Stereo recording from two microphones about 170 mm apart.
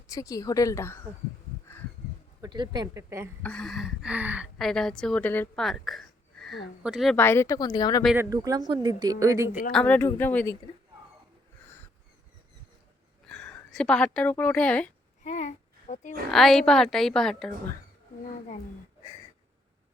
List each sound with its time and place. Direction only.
0.1 s speech: 20° left (ahead or behind)
2.4 s speech: 25° right (ahead or behind)
3.4 s a woman's voice: 5° left (ahead or behind)
4.5 s a woman's voice: centre (ahead or behind)
7.2 s speech: 15° left (ahead or behind)
8.1 s speech: 15° right (ahead or behind)
9.7 s speech: 10° left (ahead or behind)
13.2 s a woman's voice: 5° left (ahead or behind)
15.2 s a sound: 45° left (ahead or behind)
16.3 s a woman's voice: centre (ahead or behind)